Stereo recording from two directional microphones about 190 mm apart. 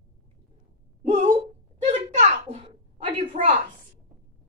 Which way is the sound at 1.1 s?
30° right (ahead or behind).